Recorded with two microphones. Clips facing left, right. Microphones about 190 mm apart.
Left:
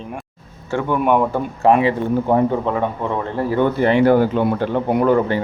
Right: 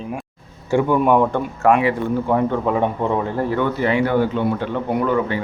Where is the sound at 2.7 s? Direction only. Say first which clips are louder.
Right 1 dB; 10° right (ahead or behind).